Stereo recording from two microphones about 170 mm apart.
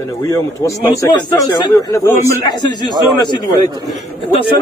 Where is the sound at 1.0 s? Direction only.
25° left (ahead or behind).